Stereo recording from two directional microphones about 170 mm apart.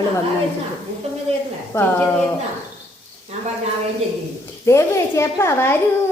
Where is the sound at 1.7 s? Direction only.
10° left (ahead or behind).